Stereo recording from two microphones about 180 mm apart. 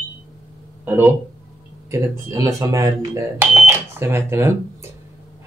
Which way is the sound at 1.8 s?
15° right (ahead or behind).